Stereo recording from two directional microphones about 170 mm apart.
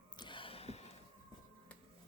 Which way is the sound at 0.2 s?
30° left (ahead or behind).